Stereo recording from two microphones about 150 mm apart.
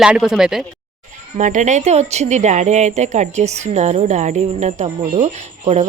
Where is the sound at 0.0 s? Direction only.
5° right (ahead or behind).